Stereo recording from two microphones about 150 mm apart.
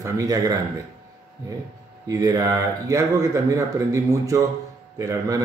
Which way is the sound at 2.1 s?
25° right (ahead or behind).